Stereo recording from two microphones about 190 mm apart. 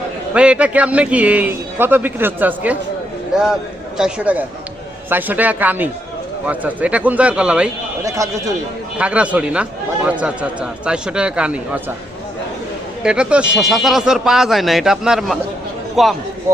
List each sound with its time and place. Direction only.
0.3 s a man's voice: 5° right (ahead or behind)
8.0 s a man's voice: 15° right (ahead or behind)
13.0 s a man's voice: 5° right (ahead or behind)